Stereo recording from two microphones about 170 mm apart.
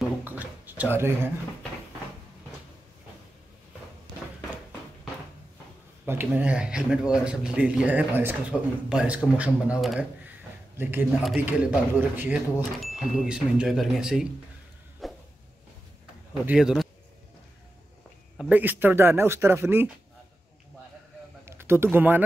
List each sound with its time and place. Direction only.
0.2 s a sound: 10° right (ahead or behind)
0.9 s speech: 15° right (ahead or behind)
6.0 s speech: 10° right (ahead or behind)
15.0 s a sound: centre (ahead or behind)
16.4 s speech: 5° right (ahead or behind)
18.4 s speech: 10° right (ahead or behind)
21.5 s speech: 15° right (ahead or behind)